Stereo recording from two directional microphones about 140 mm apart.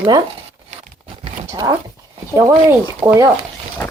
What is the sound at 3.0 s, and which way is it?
Speech, 30° right (ahead or behind).